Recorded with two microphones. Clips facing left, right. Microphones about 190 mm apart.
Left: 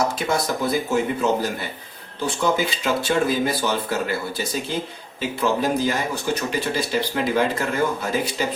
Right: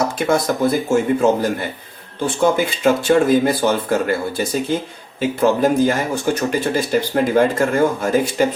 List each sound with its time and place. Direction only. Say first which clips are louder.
0.3 s speech: right 6 dB; 50° right (ahead or behind)
5.4 s speech: right 6 dB; 50° right (ahead or behind)